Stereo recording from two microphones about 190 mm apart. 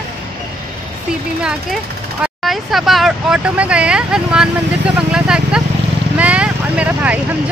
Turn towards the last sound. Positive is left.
turn(degrees=-5)  # may be behind; listen again after turning